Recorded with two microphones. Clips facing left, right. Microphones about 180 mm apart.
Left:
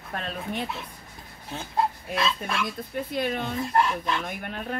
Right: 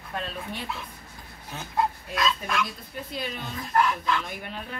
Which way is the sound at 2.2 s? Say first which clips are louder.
Right 1 dB; 30° left (ahead or behind).